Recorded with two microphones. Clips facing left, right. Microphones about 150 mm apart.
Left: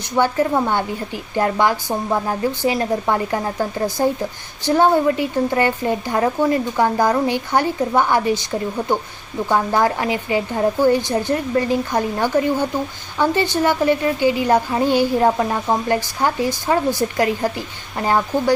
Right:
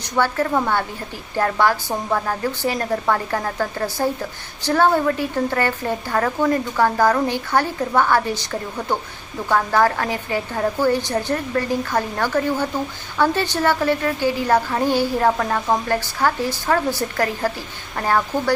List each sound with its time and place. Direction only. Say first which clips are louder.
0.2 s a woman's voice: left 2 dB; 15° left (ahead or behind)